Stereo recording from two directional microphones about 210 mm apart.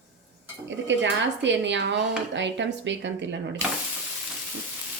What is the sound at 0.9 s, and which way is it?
Speech, 60° right (ahead or behind).